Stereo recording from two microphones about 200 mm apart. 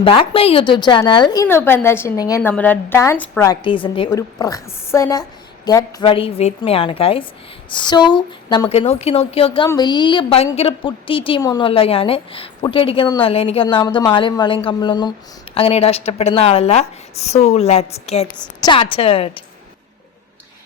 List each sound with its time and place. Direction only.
0.0 s a woman's voice: 25° left (ahead or behind)